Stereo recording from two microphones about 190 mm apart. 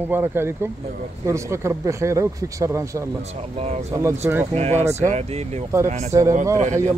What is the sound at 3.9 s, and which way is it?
Speech, 15° right (ahead or behind).